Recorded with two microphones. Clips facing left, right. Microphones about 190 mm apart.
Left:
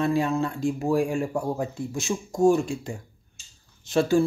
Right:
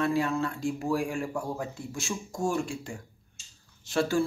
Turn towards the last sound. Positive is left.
turn(degrees=20)  # may be behind; listen again after turning